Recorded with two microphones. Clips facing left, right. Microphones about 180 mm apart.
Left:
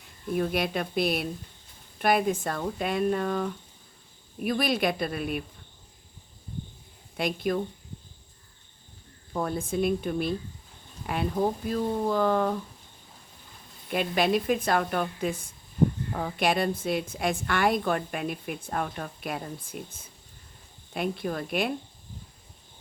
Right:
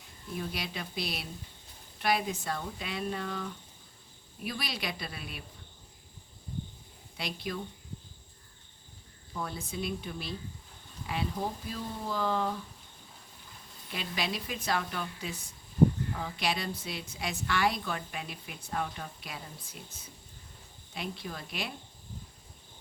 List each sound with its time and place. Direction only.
0.3 s a woman's voice: 55° left (ahead or behind)
7.2 s a woman's voice: 50° left (ahead or behind)
9.3 s a woman's voice: 50° left (ahead or behind)
13.9 s a woman's voice: 55° left (ahead or behind)